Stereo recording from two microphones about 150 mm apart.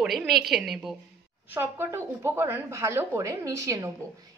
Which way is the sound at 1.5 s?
15° right (ahead or behind).